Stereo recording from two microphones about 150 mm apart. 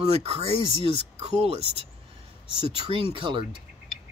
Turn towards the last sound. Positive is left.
turn(degrees=-35)  # may be behind; listen again after turning